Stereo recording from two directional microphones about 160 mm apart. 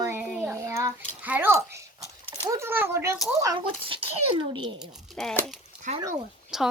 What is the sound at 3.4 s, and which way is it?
Speech, 30° right (ahead or behind).